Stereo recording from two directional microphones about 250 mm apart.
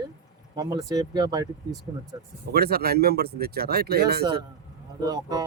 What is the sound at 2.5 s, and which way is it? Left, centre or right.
Speech, right.